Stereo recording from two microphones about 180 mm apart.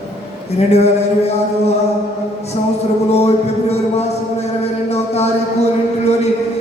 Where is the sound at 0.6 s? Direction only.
35° left (ahead or behind).